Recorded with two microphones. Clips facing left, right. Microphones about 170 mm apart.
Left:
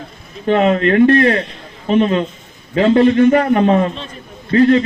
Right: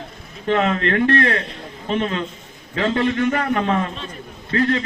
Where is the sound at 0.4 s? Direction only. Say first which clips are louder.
Left 6 dB; 20° left (ahead or behind).